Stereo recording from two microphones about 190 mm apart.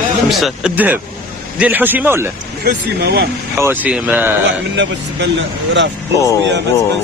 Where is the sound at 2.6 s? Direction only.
55° right (ahead or behind).